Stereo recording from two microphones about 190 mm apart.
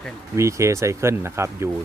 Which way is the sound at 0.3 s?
15° right (ahead or behind).